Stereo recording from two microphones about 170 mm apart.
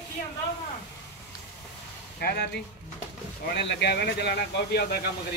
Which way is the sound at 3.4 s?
85° left.